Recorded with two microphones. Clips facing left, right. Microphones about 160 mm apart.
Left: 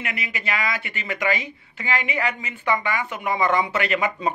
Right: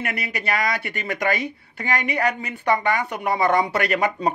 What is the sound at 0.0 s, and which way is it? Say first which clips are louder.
A woman's voice: right 3 dB; 40° right (ahead or behind).